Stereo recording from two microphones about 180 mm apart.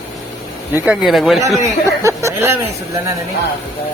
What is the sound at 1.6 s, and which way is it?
Speech, 15° right (ahead or behind).